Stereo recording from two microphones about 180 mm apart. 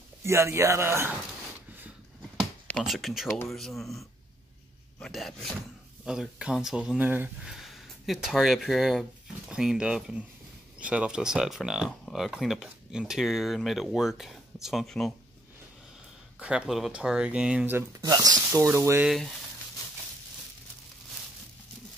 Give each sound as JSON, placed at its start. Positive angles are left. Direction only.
{"t": 0.2, "sound": "speech", "side_deg": -15}
{"t": 2.8, "sound": "speech", "side_deg": 0}
{"t": 16.3, "sound": "speech", "side_deg": -5}
{"t": 19.0, "sound": "speech", "side_deg": 0}